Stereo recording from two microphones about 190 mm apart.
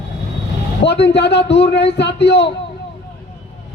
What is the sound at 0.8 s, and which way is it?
Speech, 60° left (ahead or behind).